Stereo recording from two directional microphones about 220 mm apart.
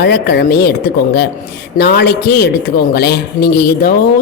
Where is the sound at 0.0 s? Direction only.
50° left (ahead or behind).